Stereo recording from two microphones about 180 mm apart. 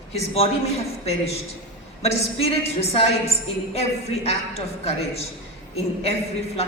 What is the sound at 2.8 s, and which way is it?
A man's voice, 35° left (ahead or behind).